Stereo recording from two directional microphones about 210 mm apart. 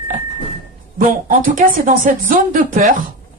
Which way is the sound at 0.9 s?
40° right (ahead or behind).